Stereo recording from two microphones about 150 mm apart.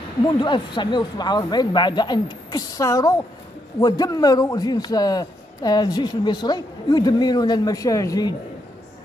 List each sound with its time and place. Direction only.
0.4 s a man's voice: 30° left (ahead or behind)